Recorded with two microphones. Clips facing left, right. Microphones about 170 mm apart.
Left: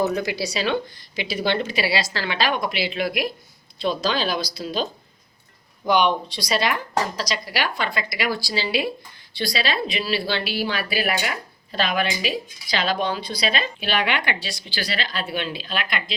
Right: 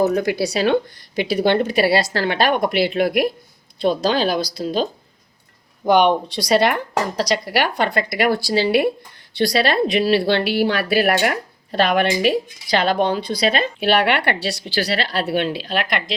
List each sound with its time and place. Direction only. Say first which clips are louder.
0.1 s speech: right 6 dB; 55° right (ahead or behind); by 16.1 s 70° right (ahead or behind)